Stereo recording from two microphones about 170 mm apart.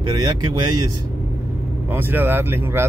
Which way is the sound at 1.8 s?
10° right (ahead or behind).